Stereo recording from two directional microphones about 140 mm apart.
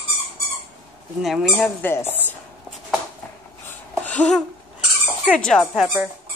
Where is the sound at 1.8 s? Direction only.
15° left (ahead or behind).